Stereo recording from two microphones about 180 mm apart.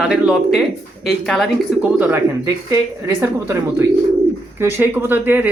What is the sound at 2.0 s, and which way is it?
Speech, 15° right (ahead or behind).